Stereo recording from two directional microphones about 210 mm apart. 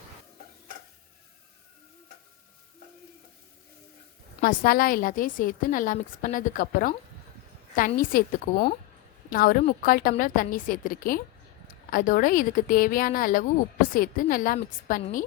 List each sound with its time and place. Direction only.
4.4 s a woman's voice: 45° left (ahead or behind)